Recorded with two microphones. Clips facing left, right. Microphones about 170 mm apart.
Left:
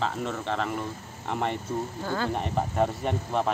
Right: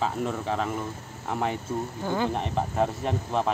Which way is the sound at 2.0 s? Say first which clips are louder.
Right 5 dB; 15° right (ahead or behind).